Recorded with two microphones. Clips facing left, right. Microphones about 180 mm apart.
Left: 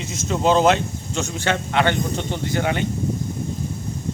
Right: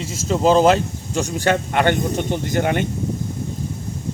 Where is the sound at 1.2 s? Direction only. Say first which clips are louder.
Right 5 dB; 40° right (ahead or behind).